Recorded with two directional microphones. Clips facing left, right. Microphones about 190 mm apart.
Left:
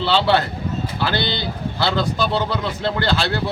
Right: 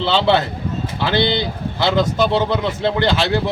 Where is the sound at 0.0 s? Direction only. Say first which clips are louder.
Right 2 dB; 20° right (ahead or behind).